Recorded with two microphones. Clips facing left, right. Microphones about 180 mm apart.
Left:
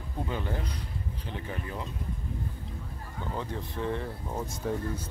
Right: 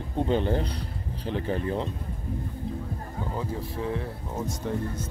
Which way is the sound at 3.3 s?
5° right (ahead or behind).